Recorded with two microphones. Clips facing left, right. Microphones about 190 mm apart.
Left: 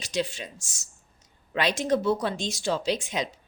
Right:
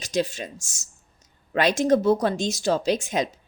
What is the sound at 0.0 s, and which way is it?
Speech, 45° right (ahead or behind).